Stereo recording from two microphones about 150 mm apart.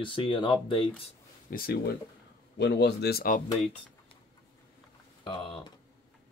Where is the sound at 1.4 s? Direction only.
85° left.